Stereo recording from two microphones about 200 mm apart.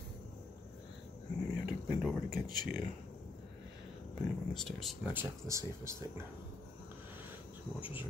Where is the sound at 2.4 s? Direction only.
45° right (ahead or behind).